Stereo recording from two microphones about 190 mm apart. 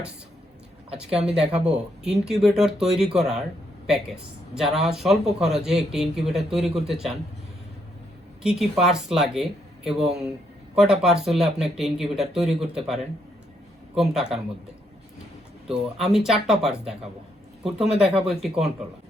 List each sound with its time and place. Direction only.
0.9 s a man's voice: 5° right (ahead or behind)
8.4 s a man's voice: centre (ahead or behind)
13.9 s a man's voice: centre (ahead or behind)
15.6 s a man's voice: 5° right (ahead or behind)